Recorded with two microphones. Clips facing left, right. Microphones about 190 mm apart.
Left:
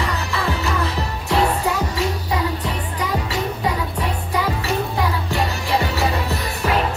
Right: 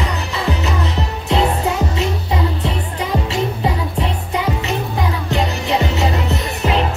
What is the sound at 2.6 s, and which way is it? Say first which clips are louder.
Music: right 3 dB; 25° right (ahead or behind).